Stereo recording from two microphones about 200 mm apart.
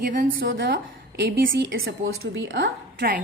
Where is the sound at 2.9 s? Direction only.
50° right (ahead or behind).